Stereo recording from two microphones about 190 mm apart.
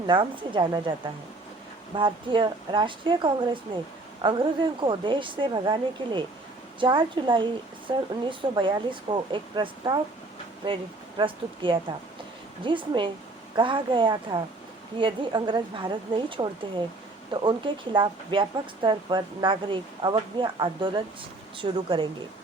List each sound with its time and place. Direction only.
0.1 s speech: 25° right (ahead or behind)
2.0 s speech: 25° right (ahead or behind)
11.2 s speech: 25° right (ahead or behind)